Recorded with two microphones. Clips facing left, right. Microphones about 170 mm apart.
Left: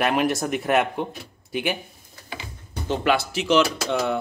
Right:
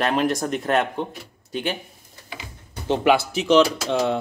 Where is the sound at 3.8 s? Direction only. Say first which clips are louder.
Right 2 dB; 20° right (ahead or behind).